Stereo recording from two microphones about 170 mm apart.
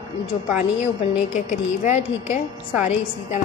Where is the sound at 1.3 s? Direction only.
45° left (ahead or behind).